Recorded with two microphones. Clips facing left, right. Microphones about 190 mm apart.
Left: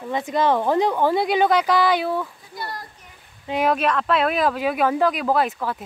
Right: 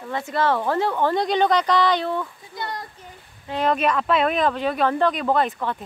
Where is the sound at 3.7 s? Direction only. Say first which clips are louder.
Even; centre (ahead or behind).